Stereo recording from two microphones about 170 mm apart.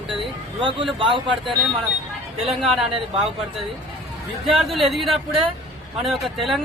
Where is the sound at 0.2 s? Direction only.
30° right (ahead or behind).